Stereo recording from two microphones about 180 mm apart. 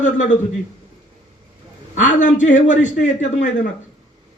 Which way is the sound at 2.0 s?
45° left (ahead or behind).